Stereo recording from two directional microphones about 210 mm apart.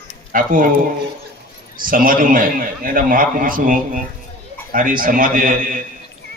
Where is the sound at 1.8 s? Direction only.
40° right (ahead or behind).